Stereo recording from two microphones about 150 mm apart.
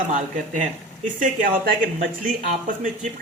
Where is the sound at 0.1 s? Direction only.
55° right (ahead or behind).